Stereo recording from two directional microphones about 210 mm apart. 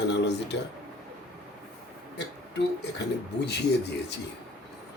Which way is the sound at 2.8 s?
55° left (ahead or behind).